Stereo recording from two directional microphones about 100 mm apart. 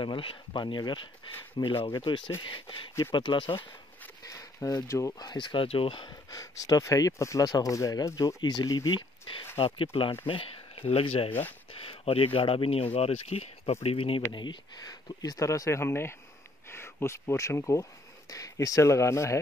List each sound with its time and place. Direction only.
0.0 s speech: 60° left (ahead or behind)
4.3 s speech: 35° left (ahead or behind)
5.3 s speech: 55° left (ahead or behind)
6.3 s speech: 35° left (ahead or behind)
9.6 s speech: 65° left (ahead or behind); by 13.7 s 90° left
13.8 s speech: 70° left (ahead or behind)
14.3 s speech: 50° left (ahead or behind); by 19.4 s 30° left (ahead or behind)